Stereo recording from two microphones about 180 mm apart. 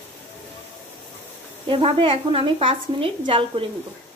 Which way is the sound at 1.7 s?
30° right (ahead or behind).